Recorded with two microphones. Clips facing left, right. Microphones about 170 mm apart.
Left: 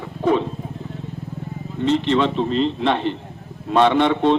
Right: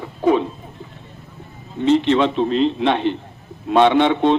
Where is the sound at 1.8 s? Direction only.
Centre (ahead or behind).